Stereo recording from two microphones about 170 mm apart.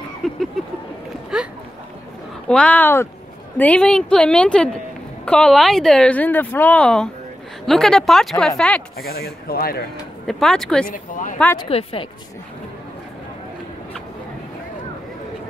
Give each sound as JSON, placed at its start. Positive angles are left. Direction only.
{"t": 0.2, "sound": "a woman's voice", "side_deg": 0}
{"t": 2.4, "sound": "a woman's voice", "side_deg": 5}
{"t": 8.9, "sound": "speech", "side_deg": 65}
{"t": 10.2, "sound": "a woman's voice", "side_deg": 0}
{"t": 10.9, "sound": "speech", "side_deg": 50}
{"t": 11.5, "sound": "speech", "side_deg": 30}